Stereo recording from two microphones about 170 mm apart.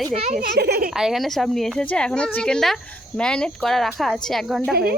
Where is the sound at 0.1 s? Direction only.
35° right (ahead or behind).